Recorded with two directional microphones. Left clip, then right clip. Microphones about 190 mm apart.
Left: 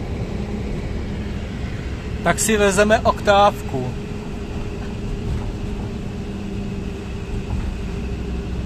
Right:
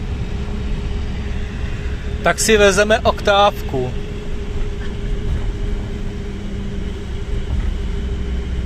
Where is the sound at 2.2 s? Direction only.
Centre (ahead or behind).